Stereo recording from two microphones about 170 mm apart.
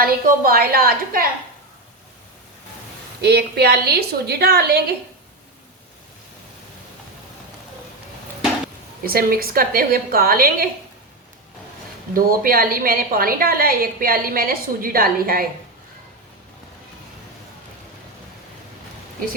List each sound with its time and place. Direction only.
0.0 s a woman's voice: 60° right (ahead or behind)
3.2 s a woman's voice: 70° right (ahead or behind)
9.0 s a woman's voice: 60° right (ahead or behind)
12.1 s a woman's voice: 55° right (ahead or behind)